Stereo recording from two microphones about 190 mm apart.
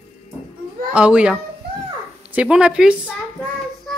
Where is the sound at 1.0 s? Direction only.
5° right (ahead or behind).